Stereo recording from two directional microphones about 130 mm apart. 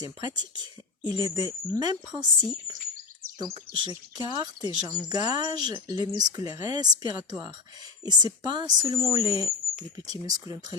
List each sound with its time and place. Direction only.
0.0 s speech: 30° right (ahead or behind)
3.5 s speech: 35° right (ahead or behind)